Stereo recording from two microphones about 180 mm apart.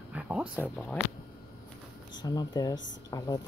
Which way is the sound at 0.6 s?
5° left (ahead or behind).